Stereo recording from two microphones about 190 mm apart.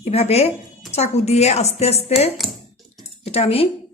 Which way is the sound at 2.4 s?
Centre (ahead or behind).